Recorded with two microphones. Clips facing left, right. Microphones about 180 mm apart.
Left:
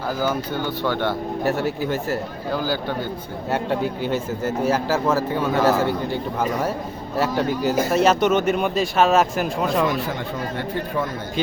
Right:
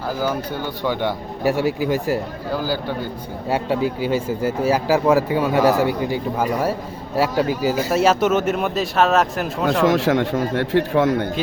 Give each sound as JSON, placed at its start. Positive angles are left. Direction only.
{"t": 0.2, "sound": "speech", "side_deg": -10}
{"t": 9.6, "sound": "speech", "side_deg": -90}